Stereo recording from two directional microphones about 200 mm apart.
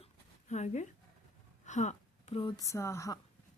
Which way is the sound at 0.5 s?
35° left (ahead or behind).